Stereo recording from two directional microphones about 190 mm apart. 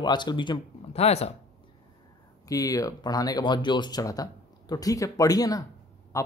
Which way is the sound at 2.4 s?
20° left (ahead or behind).